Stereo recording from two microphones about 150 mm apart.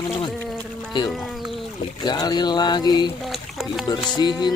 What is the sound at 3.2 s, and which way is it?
Boat, centre (ahead or behind).